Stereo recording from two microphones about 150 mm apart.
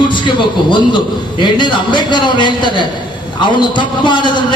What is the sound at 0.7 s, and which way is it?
A man's voice, 30° left (ahead or behind).